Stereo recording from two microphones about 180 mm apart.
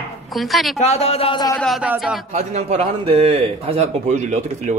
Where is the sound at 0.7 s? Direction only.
35° left (ahead or behind).